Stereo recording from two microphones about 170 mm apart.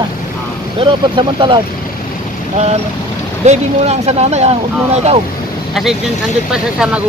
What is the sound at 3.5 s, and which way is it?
Speech, 40° right (ahead or behind).